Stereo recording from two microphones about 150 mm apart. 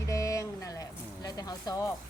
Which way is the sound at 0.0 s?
20° left (ahead or behind).